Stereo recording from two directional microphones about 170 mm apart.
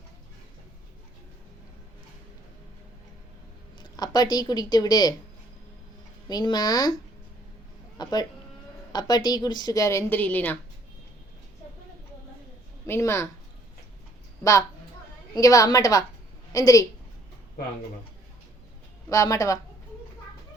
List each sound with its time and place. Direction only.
3.9 s a woman's voice: 25° left (ahead or behind)
6.2 s a woman's voice: 25° left (ahead or behind)
7.9 s a woman's voice: 25° left (ahead or behind)
12.9 s speech: 15° left (ahead or behind)
15.4 s a woman's voice: 20° left (ahead or behind)
19.0 s a woman's voice: 20° left (ahead or behind)